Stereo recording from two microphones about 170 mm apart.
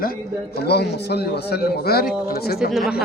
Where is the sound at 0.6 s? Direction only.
75° left (ahead or behind).